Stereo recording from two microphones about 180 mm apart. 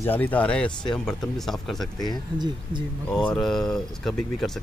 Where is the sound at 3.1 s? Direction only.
5° left (ahead or behind).